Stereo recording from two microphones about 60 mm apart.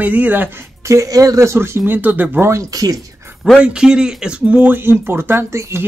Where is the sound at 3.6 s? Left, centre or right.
Centre.